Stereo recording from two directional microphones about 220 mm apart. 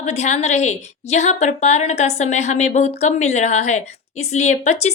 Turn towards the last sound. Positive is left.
turn(degrees=30)  # may be behind; listen again after turning